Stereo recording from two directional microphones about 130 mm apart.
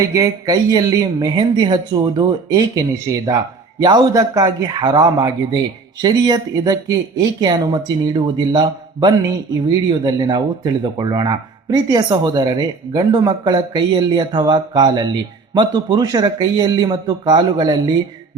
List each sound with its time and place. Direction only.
0.1 s speech: 25° right (ahead or behind)